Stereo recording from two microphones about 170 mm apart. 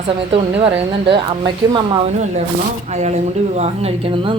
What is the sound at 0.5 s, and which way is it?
Speech, 35° right (ahead or behind).